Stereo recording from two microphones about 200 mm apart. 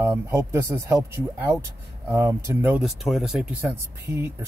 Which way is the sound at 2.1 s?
15° right (ahead or behind).